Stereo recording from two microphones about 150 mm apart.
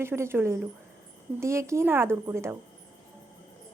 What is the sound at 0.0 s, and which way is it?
Speech, 15° right (ahead or behind).